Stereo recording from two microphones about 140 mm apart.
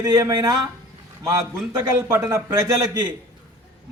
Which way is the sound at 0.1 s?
30° right (ahead or behind).